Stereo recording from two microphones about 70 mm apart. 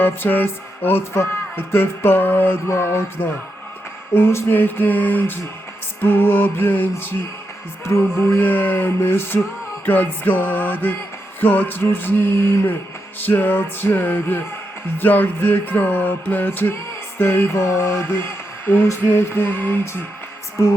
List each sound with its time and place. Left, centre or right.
0.0 s music: left